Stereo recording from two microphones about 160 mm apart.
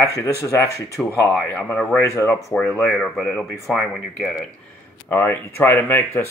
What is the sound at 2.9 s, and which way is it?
Speech, centre (ahead or behind).